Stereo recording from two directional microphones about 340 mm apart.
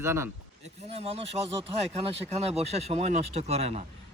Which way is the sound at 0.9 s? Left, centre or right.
Centre.